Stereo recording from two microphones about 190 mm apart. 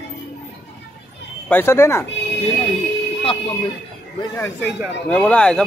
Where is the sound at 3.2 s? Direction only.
30° left (ahead or behind).